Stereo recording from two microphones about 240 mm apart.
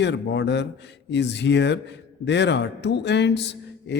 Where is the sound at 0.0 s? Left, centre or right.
Left.